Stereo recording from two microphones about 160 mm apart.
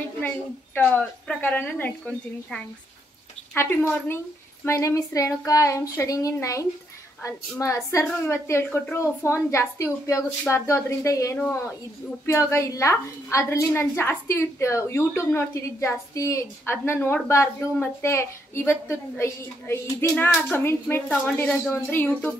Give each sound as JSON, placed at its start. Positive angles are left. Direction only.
{"t": 0.7, "sound": "a woman's voice", "side_deg": 10}